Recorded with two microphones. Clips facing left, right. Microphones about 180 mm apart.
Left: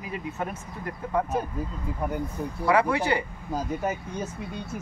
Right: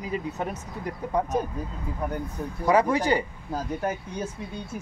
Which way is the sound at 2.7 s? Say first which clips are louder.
Right 2 dB; 40° right (ahead or behind).